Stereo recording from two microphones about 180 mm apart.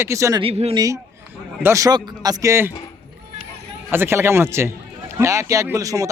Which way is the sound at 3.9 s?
15° right (ahead or behind).